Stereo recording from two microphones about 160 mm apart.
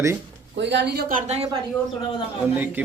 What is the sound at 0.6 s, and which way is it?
Speech, 90° right.